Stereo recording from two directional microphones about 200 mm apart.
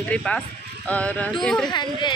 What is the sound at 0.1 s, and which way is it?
Speech, 5° left (ahead or behind).